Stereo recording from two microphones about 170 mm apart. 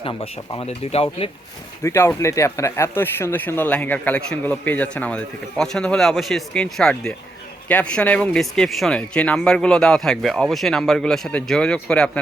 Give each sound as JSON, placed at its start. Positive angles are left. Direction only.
{"t": 0.0, "sound": "speech", "side_deg": 30}
{"t": 1.8, "sound": "speech", "side_deg": 15}